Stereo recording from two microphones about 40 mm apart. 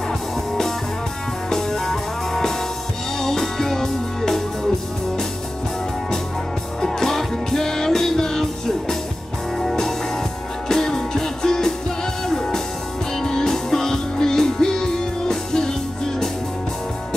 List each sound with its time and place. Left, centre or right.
1.5 s music: centre
6.8 s music: centre